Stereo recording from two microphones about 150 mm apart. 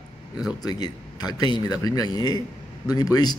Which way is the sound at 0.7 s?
25° left (ahead or behind).